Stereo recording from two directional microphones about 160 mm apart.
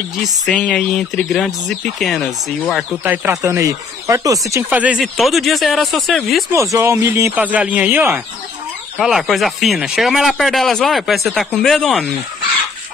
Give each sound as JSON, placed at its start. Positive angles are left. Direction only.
{"t": 0.5, "sound": "speech", "side_deg": 5}
{"t": 3.0, "sound": "speech", "side_deg": -15}
{"t": 6.5, "sound": "speech", "side_deg": -20}